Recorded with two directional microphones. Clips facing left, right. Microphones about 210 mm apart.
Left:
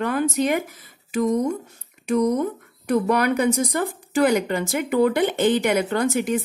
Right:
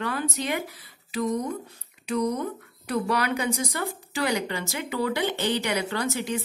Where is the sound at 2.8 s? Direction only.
50° left (ahead or behind).